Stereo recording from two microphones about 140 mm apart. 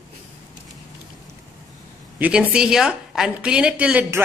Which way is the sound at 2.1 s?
10° right (ahead or behind).